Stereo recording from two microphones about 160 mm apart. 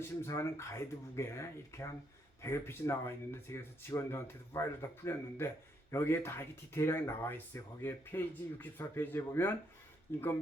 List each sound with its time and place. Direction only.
0.2 s speech: 15° left (ahead or behind)